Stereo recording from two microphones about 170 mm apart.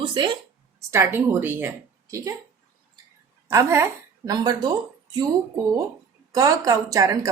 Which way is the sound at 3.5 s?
15° right (ahead or behind).